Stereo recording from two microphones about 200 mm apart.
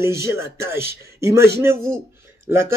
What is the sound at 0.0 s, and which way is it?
A man's voice, 15° right (ahead or behind).